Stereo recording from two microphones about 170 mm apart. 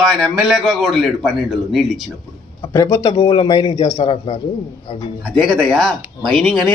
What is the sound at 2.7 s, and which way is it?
A man's voice, 15° left (ahead or behind).